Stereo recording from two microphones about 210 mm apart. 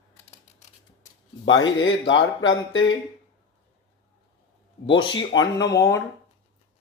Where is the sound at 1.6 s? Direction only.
60° left (ahead or behind).